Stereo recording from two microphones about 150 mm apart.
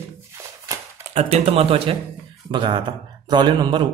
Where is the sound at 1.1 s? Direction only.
40° right (ahead or behind).